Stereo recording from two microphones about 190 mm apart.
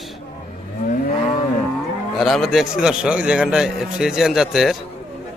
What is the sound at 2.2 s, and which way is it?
A man's voice, centre (ahead or behind).